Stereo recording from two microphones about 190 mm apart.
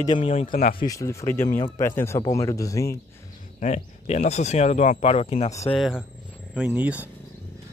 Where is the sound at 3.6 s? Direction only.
35° left (ahead or behind).